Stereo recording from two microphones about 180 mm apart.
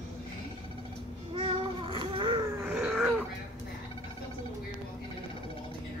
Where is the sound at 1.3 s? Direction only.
30° right (ahead or behind).